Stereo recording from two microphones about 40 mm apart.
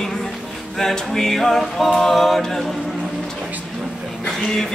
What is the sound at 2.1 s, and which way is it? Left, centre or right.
A capella, centre.